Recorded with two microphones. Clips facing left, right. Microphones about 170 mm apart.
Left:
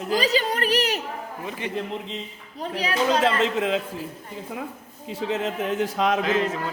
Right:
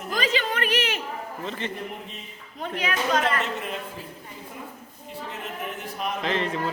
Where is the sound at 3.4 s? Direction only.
90° left.